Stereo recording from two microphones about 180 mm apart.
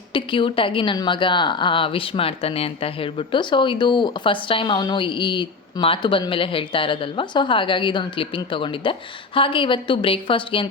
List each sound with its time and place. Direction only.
0.1 s a woman's voice: 30° left (ahead or behind)